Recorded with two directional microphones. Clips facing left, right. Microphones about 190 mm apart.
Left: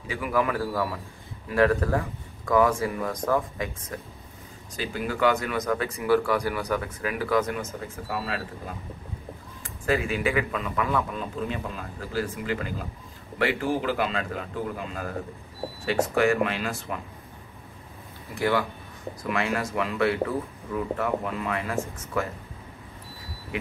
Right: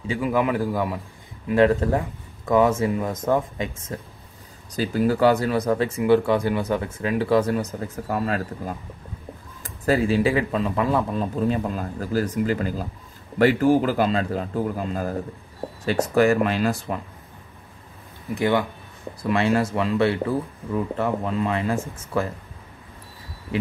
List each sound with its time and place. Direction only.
0.0 s speech: 25° right (ahead or behind)
4.7 s speech: 35° right (ahead or behind)
18.3 s speech: 20° right (ahead or behind)